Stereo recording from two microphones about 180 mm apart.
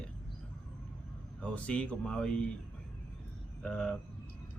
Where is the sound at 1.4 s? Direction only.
5° left (ahead or behind).